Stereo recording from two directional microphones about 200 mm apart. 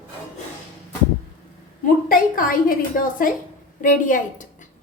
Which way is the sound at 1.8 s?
45° left (ahead or behind).